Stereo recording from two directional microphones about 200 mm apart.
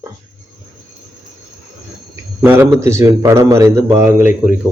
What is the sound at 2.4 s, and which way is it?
A man's voice, 10° right (ahead or behind).